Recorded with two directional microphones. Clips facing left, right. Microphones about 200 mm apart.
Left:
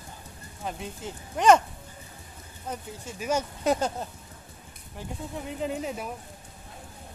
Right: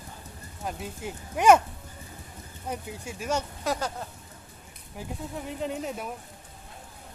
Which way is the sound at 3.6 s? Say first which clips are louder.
Left 4 dB; 20° left (ahead or behind).